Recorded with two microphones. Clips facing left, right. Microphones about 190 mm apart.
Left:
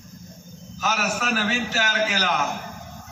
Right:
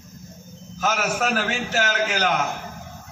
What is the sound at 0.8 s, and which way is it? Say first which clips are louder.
A man's voice: right 3 dB; 50° right (ahead or behind).